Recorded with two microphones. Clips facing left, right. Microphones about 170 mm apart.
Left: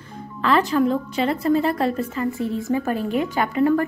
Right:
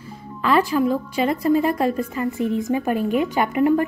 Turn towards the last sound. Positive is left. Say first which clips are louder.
# right 1 dB
turn(degrees=-15)  # may be behind; listen again after turning